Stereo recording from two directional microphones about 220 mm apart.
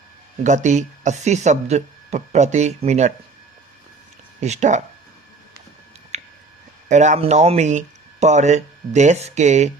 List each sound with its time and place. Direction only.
0.4 s speech: 35° right (ahead or behind)
4.4 s speech: 30° right (ahead or behind)
6.1 s a sound: 30° right (ahead or behind)
6.8 s speech: 35° right (ahead or behind)